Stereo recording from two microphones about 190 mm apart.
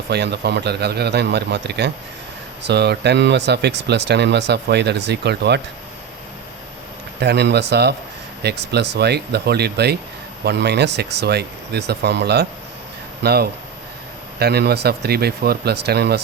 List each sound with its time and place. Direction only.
0.1 s speech: 60° right (ahead or behind)
7.2 s speech: 60° right (ahead or behind)